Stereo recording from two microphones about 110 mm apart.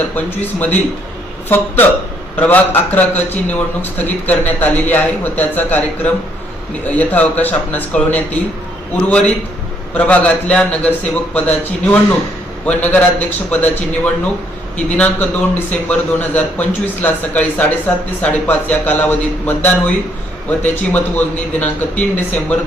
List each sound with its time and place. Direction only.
0.3 s a man's voice: 15° left (ahead or behind)